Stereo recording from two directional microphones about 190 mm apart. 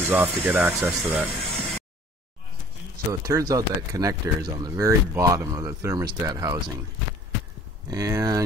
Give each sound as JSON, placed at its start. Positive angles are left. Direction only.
{"t": 0.1, "sound": "speech", "side_deg": -10}
{"t": 0.7, "sound": "speech", "side_deg": 0}
{"t": 3.1, "sound": "speech", "side_deg": -15}
{"t": 7.9, "sound": "speech", "side_deg": -20}